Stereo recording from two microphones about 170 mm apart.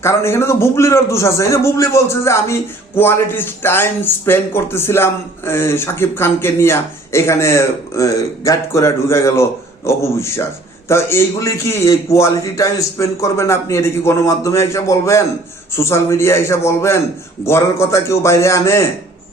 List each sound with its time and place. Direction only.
0.0 s a man's voice: 15° left (ahead or behind)